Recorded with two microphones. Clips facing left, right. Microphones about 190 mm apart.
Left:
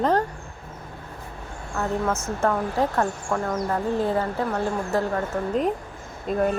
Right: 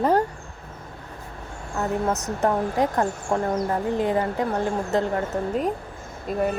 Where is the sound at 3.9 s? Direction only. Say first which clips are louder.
Even; 15° right (ahead or behind).